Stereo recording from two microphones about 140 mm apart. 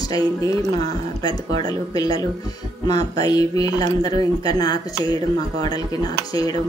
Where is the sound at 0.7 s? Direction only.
30° left (ahead or behind).